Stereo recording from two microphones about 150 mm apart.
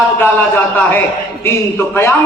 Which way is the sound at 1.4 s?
15° left (ahead or behind).